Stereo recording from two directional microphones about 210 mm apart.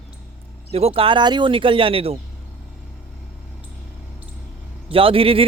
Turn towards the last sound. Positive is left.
turn(degrees=-25)  # may be behind; listen again after turning